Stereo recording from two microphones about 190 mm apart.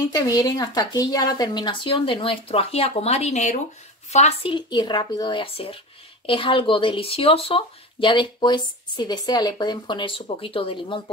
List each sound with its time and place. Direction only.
0.1 s speech: 20° left (ahead or behind)